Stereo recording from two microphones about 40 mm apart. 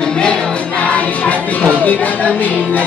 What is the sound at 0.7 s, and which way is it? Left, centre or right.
Music, left.